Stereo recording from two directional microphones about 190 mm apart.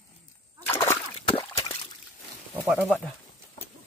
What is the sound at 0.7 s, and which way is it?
Splash, 15° left (ahead or behind).